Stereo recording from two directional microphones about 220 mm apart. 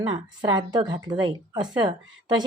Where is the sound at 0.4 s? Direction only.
20° right (ahead or behind).